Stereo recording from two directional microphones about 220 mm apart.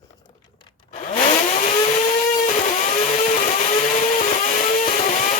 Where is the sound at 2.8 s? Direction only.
35° left (ahead or behind).